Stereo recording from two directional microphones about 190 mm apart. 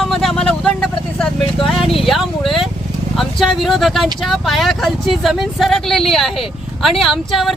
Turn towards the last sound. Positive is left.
turn(degrees=0)  # may be behind; listen again after turning